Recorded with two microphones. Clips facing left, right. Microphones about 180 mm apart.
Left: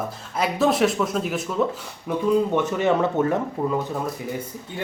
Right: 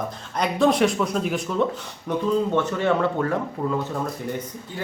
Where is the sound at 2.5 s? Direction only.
15° left (ahead or behind).